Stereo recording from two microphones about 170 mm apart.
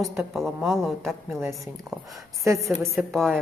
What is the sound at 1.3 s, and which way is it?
A woman's voice, 15° right (ahead or behind).